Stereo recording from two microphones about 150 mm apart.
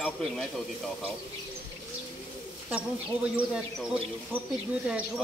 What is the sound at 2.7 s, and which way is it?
Speech, 5° right (ahead or behind).